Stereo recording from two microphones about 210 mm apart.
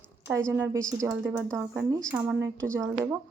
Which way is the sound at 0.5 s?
10° right (ahead or behind).